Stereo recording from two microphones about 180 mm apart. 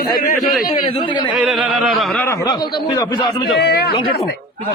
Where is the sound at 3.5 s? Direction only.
60° left (ahead or behind).